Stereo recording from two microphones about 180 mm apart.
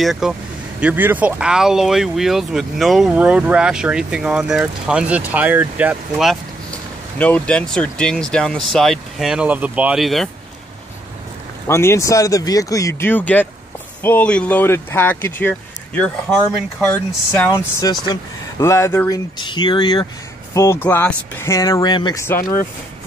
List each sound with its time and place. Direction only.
0.0 s speech: centre (ahead or behind)
11.6 s speech: 15° left (ahead or behind)
17.5 s speech: 20° left (ahead or behind)
20.5 s speech: 15° left (ahead or behind)